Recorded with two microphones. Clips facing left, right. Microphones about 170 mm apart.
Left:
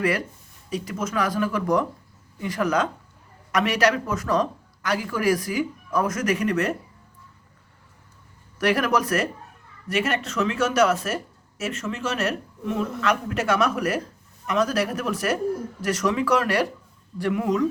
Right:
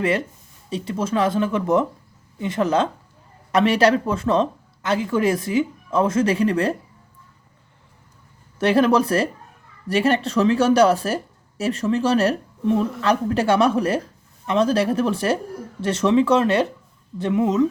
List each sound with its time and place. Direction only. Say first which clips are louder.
0.0 s speech: right 3 dB; 25° right (ahead or behind)
8.5 s speech: right 5 dB; 25° right (ahead or behind)